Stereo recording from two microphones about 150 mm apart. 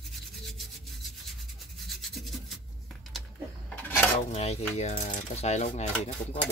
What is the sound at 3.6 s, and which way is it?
Dishes, 15° left (ahead or behind).